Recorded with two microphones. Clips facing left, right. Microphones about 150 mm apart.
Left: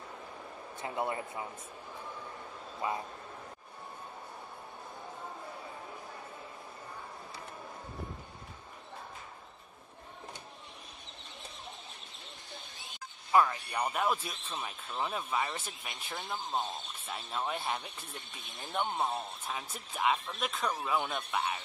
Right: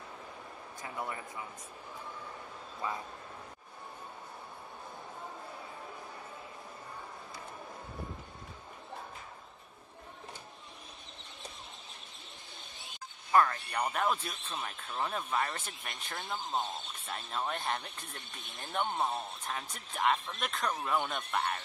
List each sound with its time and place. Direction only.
0.7 s a man's voice: 25° left (ahead or behind)
13.3 s a man's voice: 10° left (ahead or behind)